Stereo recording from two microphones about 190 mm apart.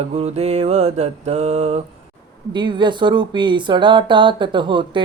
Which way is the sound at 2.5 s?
25° right (ahead or behind).